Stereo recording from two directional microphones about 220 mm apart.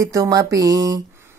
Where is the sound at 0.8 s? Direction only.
15° right (ahead or behind).